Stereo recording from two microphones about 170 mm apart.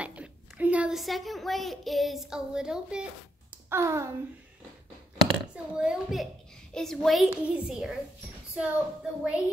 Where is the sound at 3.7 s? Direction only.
15° right (ahead or behind).